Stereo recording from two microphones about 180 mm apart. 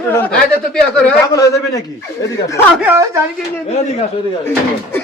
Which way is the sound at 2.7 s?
10° right (ahead or behind).